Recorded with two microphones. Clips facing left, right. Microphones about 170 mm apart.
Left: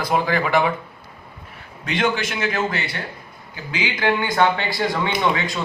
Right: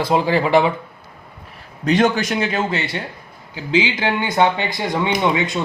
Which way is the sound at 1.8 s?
40° right (ahead or behind).